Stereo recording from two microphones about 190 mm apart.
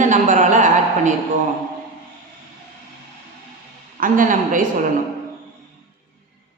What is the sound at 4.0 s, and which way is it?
Speech, 45° right (ahead or behind).